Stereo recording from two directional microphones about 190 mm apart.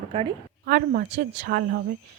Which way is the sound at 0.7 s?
50° right (ahead or behind).